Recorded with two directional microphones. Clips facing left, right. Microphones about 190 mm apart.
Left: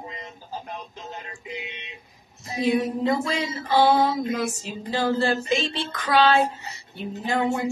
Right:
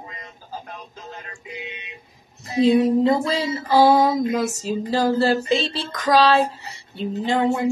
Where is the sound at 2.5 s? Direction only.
30° right (ahead or behind).